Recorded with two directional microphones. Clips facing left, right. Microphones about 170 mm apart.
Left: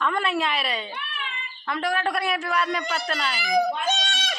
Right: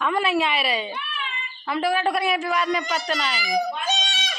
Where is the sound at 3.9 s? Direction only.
50° left (ahead or behind).